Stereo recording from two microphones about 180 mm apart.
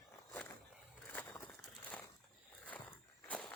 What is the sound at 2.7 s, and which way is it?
Walk, 5° left (ahead or behind).